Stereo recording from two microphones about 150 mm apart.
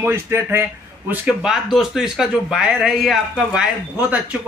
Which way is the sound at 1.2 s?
5° right (ahead or behind).